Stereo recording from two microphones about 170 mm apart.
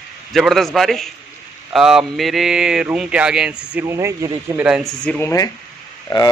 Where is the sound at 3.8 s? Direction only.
15° right (ahead or behind).